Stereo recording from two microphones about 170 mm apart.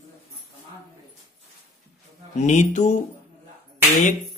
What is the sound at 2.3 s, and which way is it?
Speech, 45° left (ahead or behind).